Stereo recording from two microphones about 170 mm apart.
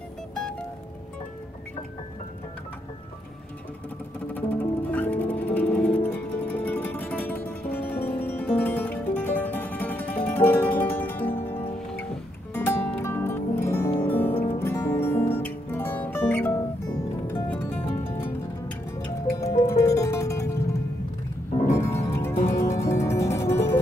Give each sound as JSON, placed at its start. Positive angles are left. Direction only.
{"t": 4.3, "sound": "music", "side_deg": 10}
{"t": 17.8, "sound": "music", "side_deg": 10}
{"t": 19.3, "sound": "music", "side_deg": 15}
{"t": 21.6, "sound": "music", "side_deg": 15}